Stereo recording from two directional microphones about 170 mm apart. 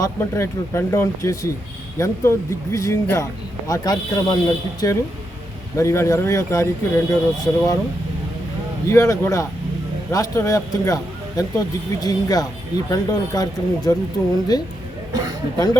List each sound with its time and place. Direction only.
0.0 s speech: 15° left (ahead or behind)
8.9 s speech: 15° left (ahead or behind)